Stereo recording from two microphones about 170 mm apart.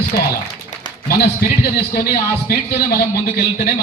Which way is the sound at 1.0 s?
65° left (ahead or behind).